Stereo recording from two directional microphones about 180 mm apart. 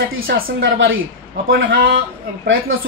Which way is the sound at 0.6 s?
90° right.